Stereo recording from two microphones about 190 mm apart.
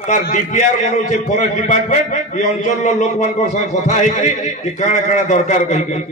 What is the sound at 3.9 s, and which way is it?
A man's voice, 40° left (ahead or behind).